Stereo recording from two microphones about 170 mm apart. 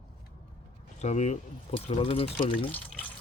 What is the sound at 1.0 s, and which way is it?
A man's voice, 40° left (ahead or behind).